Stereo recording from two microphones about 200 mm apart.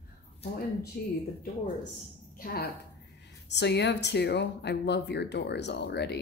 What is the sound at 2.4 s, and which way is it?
Speech, 50° left (ahead or behind).